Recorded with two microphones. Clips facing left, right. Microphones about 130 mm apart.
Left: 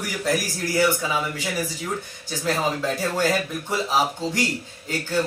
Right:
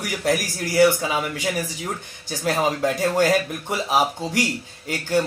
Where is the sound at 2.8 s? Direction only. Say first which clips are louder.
Right 4 dB; 15° right (ahead or behind).